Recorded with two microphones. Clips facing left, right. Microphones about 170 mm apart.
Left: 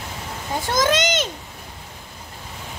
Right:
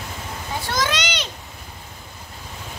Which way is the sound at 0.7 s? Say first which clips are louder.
Left 6 dB; 45° left (ahead or behind).